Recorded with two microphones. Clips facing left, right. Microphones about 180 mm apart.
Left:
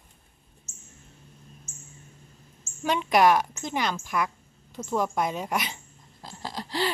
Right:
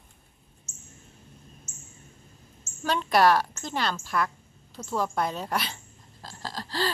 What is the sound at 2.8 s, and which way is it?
A woman's voice, 15° left (ahead or behind).